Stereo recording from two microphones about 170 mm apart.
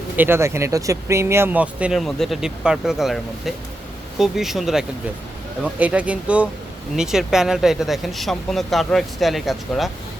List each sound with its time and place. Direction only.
0.2 s speech: 15° right (ahead or behind)